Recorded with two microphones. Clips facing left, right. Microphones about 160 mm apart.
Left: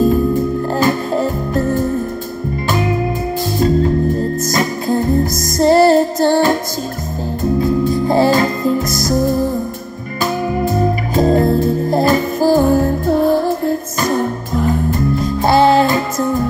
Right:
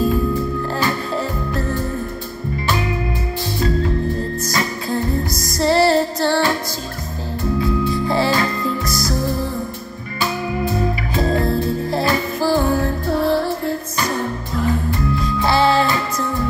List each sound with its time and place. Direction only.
0.7 s music: 45° left (ahead or behind)
4.5 s music: 45° left (ahead or behind)